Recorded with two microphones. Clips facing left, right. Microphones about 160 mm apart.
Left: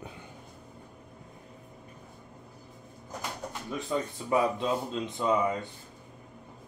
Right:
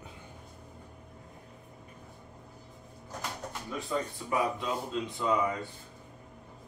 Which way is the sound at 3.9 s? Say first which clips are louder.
Left 4 dB; 20° left (ahead or behind).